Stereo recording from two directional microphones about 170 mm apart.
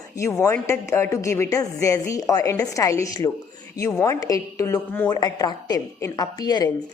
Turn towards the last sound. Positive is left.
turn(degrees=25)  # may be behind; listen again after turning